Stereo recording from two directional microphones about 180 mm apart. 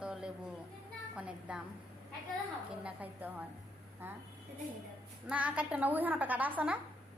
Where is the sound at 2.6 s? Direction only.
10° right (ahead or behind).